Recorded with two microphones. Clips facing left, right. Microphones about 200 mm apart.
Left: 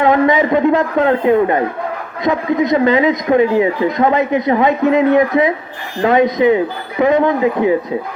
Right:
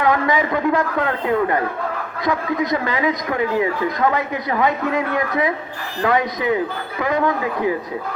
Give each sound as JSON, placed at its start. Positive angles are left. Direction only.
{"t": 0.0, "sound": "speech", "side_deg": 20}